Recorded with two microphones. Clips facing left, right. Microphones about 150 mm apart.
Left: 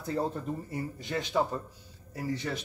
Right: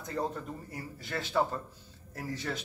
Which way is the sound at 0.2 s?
30° left (ahead or behind).